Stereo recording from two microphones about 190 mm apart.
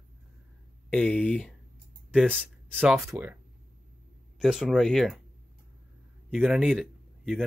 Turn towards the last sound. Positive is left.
turn(degrees=0)  # may be behind; listen again after turning